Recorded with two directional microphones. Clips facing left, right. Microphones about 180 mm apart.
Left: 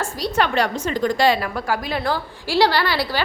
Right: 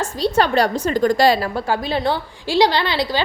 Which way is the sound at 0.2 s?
35° right (ahead or behind).